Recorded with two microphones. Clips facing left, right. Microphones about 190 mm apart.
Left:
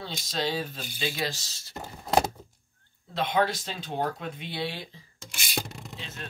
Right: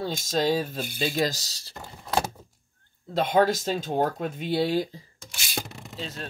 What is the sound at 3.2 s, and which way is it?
Speech, 45° right (ahead or behind).